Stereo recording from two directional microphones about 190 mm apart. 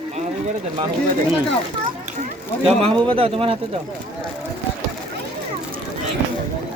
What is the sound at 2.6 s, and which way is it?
Speech, 30° right (ahead or behind).